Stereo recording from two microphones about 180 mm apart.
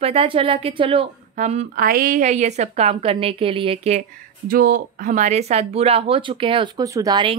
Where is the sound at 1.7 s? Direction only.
55° right (ahead or behind); by 4.1 s 35° right (ahead or behind).